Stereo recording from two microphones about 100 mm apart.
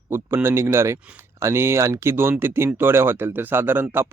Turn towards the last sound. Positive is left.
turn(degrees=-20)  # may be behind; listen again after turning